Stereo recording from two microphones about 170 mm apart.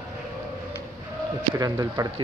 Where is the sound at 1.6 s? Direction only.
20° right (ahead or behind).